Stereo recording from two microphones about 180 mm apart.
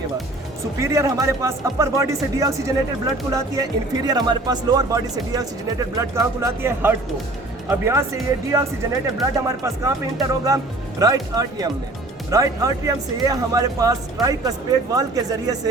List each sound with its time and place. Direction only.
0.8 s speech: 15° right (ahead or behind)